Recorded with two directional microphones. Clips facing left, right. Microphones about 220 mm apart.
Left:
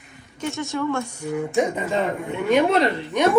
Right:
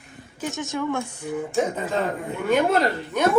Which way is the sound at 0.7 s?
15° right (ahead or behind).